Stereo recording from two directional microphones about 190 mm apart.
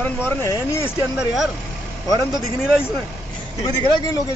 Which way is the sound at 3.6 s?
20° left (ahead or behind).